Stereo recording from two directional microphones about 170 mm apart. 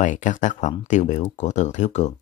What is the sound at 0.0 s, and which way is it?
Speech, 50° left (ahead or behind).